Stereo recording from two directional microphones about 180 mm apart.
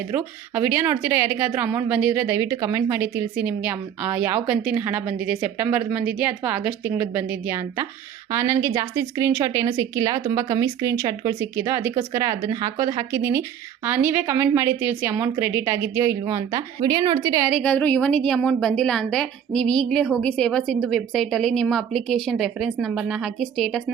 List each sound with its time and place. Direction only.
0.1 s a woman's voice: 10° right (ahead or behind)
17.5 s a woman's voice: 5° left (ahead or behind)